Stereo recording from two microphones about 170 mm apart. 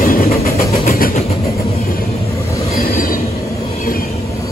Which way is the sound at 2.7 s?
60° left (ahead or behind).